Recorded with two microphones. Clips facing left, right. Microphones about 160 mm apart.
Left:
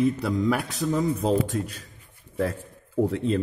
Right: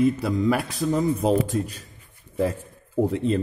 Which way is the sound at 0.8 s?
20° right (ahead or behind).